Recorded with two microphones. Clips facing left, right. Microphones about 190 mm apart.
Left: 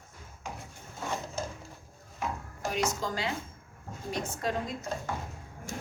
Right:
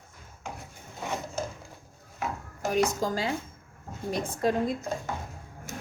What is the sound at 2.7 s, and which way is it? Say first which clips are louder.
A woman's voice: right 6 dB; 35° right (ahead or behind).